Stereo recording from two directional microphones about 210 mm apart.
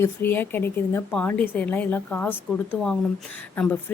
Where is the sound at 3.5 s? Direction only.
5° left (ahead or behind).